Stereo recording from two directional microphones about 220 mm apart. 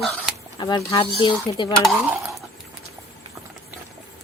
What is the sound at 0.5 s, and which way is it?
Speech, 20° left (ahead or behind).